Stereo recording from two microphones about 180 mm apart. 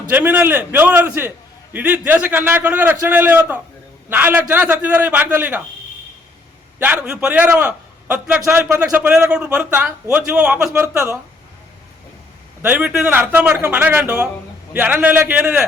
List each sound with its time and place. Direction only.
0.1 s a man's voice: 10° right (ahead or behind)
6.7 s a man's voice: 10° right (ahead or behind)
12.6 s a man's voice: 5° right (ahead or behind)